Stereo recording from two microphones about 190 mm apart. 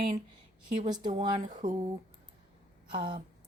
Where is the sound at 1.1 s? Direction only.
40° right (ahead or behind).